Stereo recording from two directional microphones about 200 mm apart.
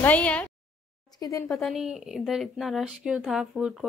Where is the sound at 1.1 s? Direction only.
15° left (ahead or behind).